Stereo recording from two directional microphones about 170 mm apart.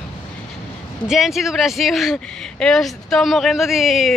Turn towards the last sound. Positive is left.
turn(degrees=0)  # may be behind; listen again after turning